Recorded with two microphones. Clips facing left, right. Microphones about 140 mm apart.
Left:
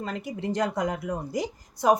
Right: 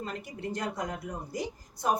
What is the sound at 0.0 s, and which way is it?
Speech, 90° left.